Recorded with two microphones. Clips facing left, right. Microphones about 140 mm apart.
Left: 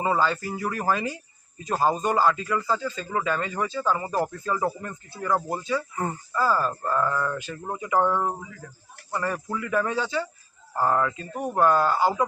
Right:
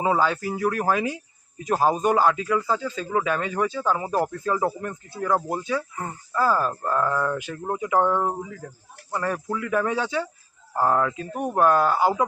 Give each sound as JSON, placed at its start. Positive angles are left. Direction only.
{"t": 0.0, "sound": "speech", "side_deg": -5}
{"t": 8.6, "sound": "speech", "side_deg": -40}
{"t": 9.1, "sound": "speech", "side_deg": -5}
{"t": 11.3, "sound": "speech", "side_deg": -15}
{"t": 11.6, "sound": "speech", "side_deg": -5}